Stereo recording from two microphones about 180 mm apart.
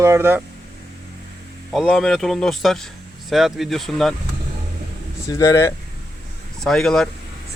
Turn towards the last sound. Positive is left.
turn(degrees=5)  # may be behind; listen again after turning